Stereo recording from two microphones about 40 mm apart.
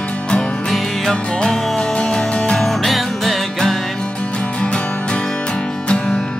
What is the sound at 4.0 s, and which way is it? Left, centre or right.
Music, left.